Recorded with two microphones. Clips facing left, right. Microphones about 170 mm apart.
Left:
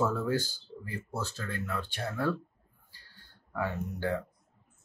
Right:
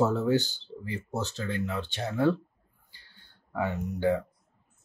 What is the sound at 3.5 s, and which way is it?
Speech, 20° right (ahead or behind).